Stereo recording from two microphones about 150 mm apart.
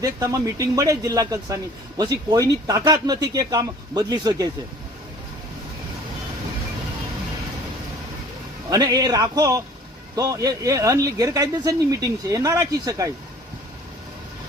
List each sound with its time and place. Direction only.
0.0 s speech: 20° right (ahead or behind)
8.7 s speech: 25° right (ahead or behind)